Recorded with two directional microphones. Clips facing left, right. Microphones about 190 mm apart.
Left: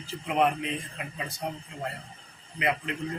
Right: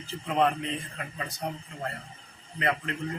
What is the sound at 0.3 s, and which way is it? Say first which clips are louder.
A man's voice: even; 15° left (ahead or behind).